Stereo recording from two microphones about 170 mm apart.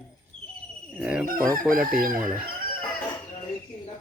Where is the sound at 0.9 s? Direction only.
5° right (ahead or behind).